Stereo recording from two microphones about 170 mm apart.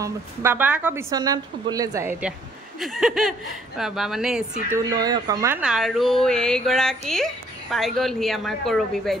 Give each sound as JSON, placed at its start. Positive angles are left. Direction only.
{"t": 0.0, "sound": "a woman's voice", "side_deg": -15}
{"t": 1.1, "sound": "a woman's voice", "side_deg": -25}
{"t": 2.8, "sound": "speech", "side_deg": 0}
{"t": 4.6, "sound": "a woman's voice", "side_deg": -20}
{"t": 5.6, "sound": "speech", "side_deg": 0}